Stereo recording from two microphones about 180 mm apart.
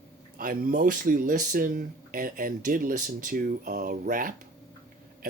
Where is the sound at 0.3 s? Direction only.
50° right (ahead or behind).